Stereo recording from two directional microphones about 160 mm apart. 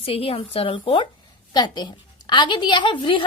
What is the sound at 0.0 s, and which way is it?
A woman's voice, 35° left (ahead or behind).